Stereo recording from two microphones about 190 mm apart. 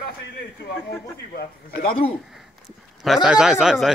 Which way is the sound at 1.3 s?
55° left (ahead or behind).